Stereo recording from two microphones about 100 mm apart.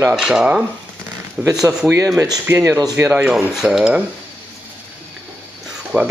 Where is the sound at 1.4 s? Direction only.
35° right (ahead or behind).